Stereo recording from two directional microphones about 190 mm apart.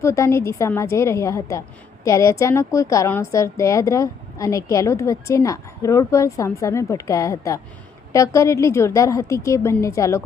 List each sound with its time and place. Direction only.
0.0 s a woman's voice: 15° left (ahead or behind)